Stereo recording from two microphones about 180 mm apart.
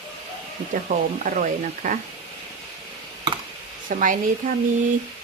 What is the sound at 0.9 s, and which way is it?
A woman's voice, 40° right (ahead or behind).